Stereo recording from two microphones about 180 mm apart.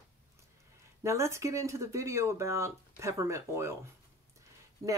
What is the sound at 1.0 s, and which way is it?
Speech, 15° right (ahead or behind).